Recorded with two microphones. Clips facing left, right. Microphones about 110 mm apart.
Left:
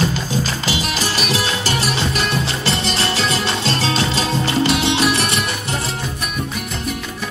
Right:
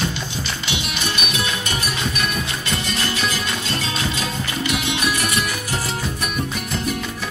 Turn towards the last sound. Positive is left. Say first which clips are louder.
# left 4 dB
turn(degrees=30)  # may be behind; listen again after turning